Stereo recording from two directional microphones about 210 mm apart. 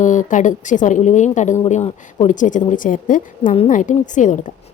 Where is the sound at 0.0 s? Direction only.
35° left (ahead or behind).